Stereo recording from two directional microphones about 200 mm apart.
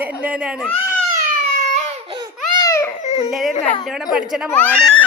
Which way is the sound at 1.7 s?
25° right (ahead or behind).